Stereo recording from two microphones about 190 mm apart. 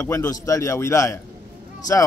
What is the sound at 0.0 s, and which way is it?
A man's voice, 15° left (ahead or behind).